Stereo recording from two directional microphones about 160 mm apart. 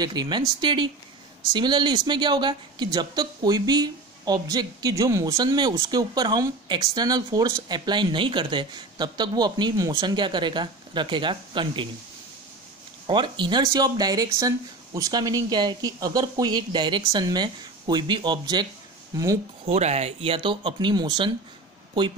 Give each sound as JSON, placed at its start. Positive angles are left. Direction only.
{"t": 0.0, "sound": "speech", "side_deg": -25}
{"t": 13.0, "sound": "speech", "side_deg": -30}
{"t": 19.6, "sound": "speech", "side_deg": -40}